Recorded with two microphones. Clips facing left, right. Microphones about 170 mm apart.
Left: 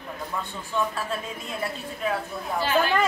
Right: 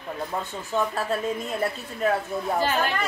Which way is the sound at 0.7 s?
40° right (ahead or behind).